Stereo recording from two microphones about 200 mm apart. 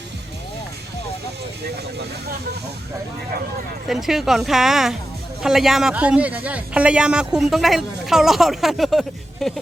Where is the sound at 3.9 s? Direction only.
Centre (ahead or behind).